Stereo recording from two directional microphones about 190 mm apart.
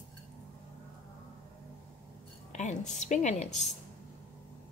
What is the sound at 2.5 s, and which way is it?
Speech, 40° left (ahead or behind).